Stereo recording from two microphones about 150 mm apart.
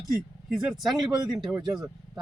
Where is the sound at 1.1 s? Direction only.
25° right (ahead or behind).